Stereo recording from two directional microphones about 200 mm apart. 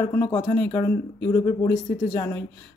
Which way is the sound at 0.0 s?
10° left (ahead or behind).